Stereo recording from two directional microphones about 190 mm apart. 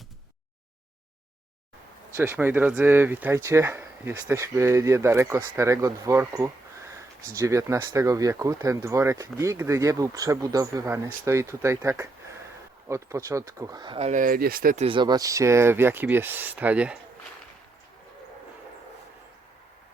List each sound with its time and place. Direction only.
2.1 s speech: 10° right (ahead or behind)
14.1 s speech: 45° right (ahead or behind)
14.8 s speech: 25° right (ahead or behind); by 17.0 s 5° right (ahead or behind)